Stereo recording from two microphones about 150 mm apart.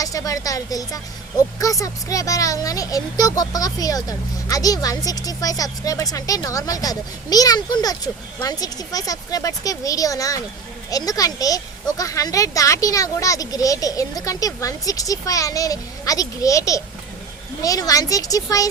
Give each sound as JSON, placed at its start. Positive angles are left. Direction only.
{"t": 0.0, "sound": "speech", "side_deg": 25}